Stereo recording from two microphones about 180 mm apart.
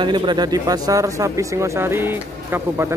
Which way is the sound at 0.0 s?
25° right (ahead or behind).